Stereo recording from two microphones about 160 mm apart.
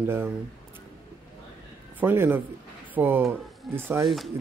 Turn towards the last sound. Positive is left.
turn(degrees=0)  # may be behind; listen again after turning